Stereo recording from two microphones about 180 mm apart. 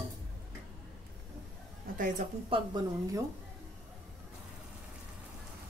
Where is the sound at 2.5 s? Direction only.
30° right (ahead or behind).